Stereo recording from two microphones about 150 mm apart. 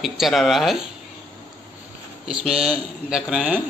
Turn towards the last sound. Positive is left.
turn(degrees=-10)  # may be behind; listen again after turning